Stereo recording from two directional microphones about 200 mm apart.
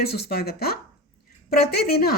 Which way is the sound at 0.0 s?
50° left (ahead or behind).